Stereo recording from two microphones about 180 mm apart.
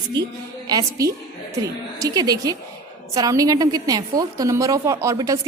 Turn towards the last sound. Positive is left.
turn(degrees=-20)  # may be behind; listen again after turning